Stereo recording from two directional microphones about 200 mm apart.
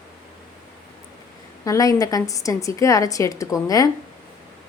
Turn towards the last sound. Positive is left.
turn(degrees=15)  # may be behind; listen again after turning